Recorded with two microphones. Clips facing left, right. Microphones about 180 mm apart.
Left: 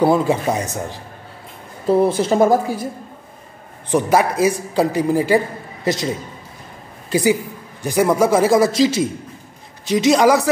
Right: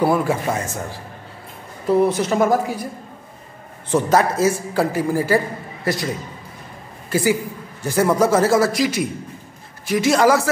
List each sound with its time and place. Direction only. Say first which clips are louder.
0.0 s a man's voice: left 3 dB; 20° left (ahead or behind)
3.9 s a man's voice: left 1 dB; 15° left (ahead or behind)
7.1 s a man's voice: left 2 dB; 20° left (ahead or behind)